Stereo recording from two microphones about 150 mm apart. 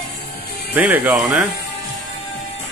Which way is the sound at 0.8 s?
10° right (ahead or behind).